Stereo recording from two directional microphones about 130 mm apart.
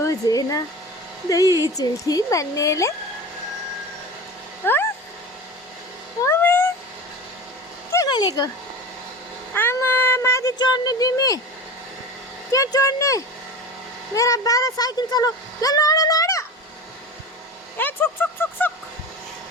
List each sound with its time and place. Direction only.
0.0 s speech: 30° left (ahead or behind)
4.6 s speech: 15° left (ahead or behind)
6.2 s a sound: 15° left (ahead or behind)
7.9 s a sound: 30° left (ahead or behind)
9.6 s speech: 15° left (ahead or behind)
12.5 s speech: 25° left (ahead or behind)
17.7 s speech: 15° left (ahead or behind)